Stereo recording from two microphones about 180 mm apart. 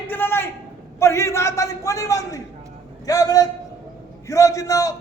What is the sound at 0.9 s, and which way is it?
A man's voice, 15° left (ahead or behind).